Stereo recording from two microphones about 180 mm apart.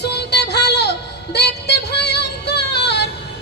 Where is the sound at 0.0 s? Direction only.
70° left (ahead or behind).